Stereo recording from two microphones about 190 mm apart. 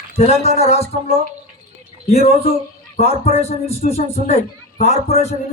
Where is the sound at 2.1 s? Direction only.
35° left (ahead or behind).